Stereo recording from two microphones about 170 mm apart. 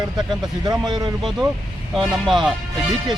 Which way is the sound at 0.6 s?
25° right (ahead or behind).